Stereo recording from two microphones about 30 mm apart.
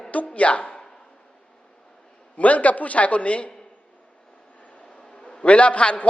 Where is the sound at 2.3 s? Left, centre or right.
Left.